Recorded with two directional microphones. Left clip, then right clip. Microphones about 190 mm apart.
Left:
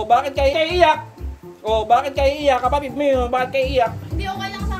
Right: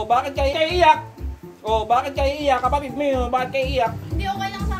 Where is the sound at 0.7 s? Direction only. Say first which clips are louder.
Right 2 dB; 25° left (ahead or behind).